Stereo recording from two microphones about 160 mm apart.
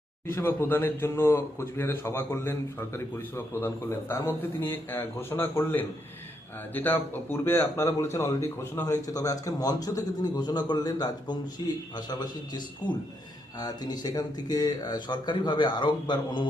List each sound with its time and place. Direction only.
0.3 s a man's voice: 15° left (ahead or behind)